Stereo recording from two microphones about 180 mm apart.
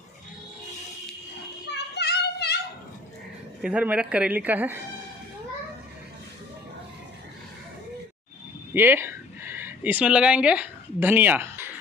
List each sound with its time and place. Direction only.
1.7 s child singing: 65° left (ahead or behind)
3.6 s a woman's voice: 5° right (ahead or behind)
8.7 s speech: 10° right (ahead or behind)